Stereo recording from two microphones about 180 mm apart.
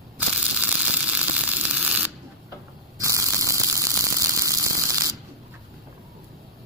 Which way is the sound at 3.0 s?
15° right (ahead or behind).